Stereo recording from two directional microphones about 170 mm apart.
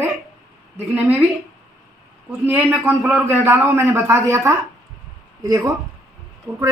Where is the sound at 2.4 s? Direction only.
10° right (ahead or behind).